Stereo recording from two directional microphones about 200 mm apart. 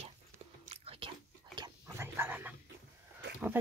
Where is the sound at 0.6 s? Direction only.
30° right (ahead or behind).